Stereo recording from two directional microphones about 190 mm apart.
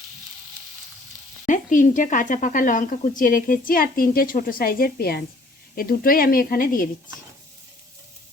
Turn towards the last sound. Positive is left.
turn(degrees=50)  # may be behind; listen again after turning